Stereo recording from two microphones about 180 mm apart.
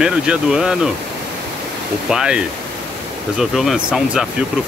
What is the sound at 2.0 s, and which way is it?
Speech, 5° right (ahead or behind).